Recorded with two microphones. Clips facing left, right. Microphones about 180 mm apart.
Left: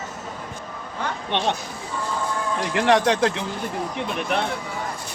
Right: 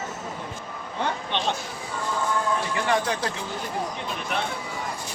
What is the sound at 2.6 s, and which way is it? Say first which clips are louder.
Speech: left 6 dB; 85° left.